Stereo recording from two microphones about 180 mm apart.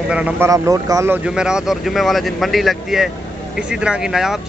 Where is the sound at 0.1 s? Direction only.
10° right (ahead or behind).